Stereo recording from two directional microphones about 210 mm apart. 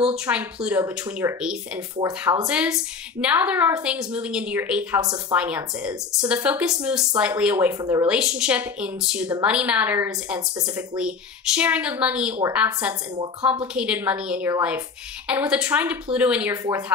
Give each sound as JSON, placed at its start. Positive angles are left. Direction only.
{"t": 0.0, "sound": "a woman's voice", "side_deg": -5}
{"t": 2.0, "sound": "speech", "side_deg": -15}
{"t": 2.4, "sound": "a woman's voice", "side_deg": -5}